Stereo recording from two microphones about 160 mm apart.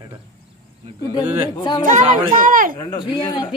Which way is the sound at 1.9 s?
55° right (ahead or behind).